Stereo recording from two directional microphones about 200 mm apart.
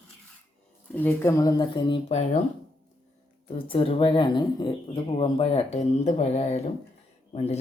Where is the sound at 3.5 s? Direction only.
25° left (ahead or behind).